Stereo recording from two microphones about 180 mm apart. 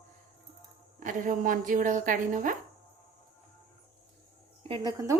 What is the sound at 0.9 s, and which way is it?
A woman's voice, 50° right (ahead or behind).